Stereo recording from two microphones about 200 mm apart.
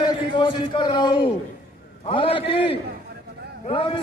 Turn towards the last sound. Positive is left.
turn(degrees=25)  # may be behind; listen again after turning